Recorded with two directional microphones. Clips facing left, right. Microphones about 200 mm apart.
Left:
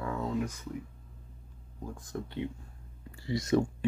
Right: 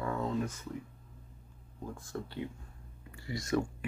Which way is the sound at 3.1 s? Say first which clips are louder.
Left 7 dB; 30° left (ahead or behind).